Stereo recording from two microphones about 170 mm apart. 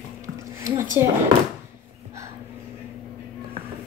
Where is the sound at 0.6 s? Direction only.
15° right (ahead or behind).